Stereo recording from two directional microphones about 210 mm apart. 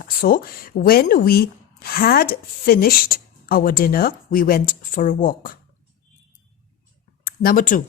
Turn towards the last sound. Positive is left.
turn(degrees=40)  # may be behind; listen again after turning